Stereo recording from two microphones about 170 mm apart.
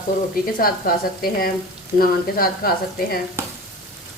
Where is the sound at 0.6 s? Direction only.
60° left (ahead or behind).